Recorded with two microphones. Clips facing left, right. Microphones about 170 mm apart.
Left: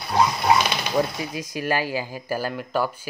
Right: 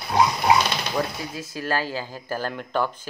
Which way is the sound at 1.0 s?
15° left (ahead or behind).